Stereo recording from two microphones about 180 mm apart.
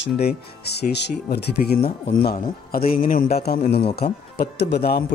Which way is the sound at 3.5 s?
60° left (ahead or behind).